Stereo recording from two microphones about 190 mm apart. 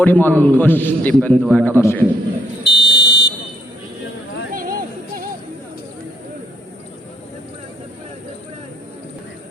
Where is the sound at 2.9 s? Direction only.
65° left (ahead or behind).